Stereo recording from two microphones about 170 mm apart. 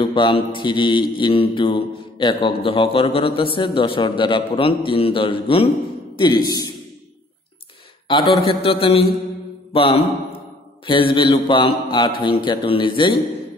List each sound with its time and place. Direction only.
0.0 s mantra: 30° left (ahead or behind)
8.1 s a man's voice: 35° left (ahead or behind)
10.9 s mantra: 30° left (ahead or behind)